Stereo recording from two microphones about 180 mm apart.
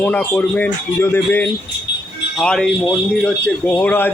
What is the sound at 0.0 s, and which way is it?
A man's voice, 10° left (ahead or behind).